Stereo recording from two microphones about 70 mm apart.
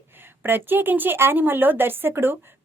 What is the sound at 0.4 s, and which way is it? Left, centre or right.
Speech, right.